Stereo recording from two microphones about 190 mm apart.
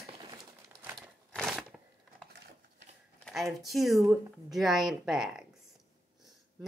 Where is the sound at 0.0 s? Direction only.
20° right (ahead or behind).